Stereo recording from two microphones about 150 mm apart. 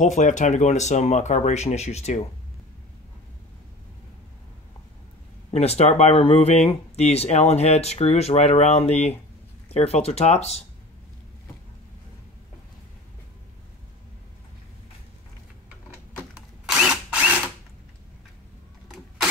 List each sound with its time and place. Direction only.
0.0 s speech: 50° left (ahead or behind)
5.5 s speech: 45° left (ahead or behind)
16.6 s drill: 5° right (ahead or behind)